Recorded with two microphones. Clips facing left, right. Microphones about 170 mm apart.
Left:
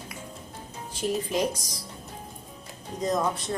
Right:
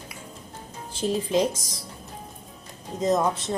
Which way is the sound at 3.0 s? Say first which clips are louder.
Right 4 dB; 25° right (ahead or behind).